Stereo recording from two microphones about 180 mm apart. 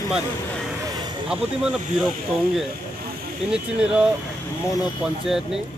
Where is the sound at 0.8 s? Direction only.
20° right (ahead or behind).